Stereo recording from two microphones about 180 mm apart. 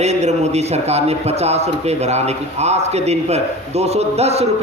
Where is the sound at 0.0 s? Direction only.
40° right (ahead or behind).